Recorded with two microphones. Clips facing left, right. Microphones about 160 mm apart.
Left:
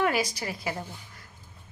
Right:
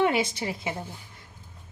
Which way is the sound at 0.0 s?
25° right (ahead or behind).